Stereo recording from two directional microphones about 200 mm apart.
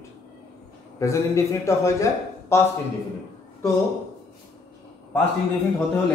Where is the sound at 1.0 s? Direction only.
15° left (ahead or behind).